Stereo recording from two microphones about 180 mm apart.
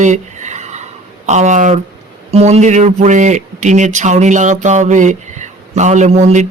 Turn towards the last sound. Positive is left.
turn(degrees=-40)  # may be behind; listen again after turning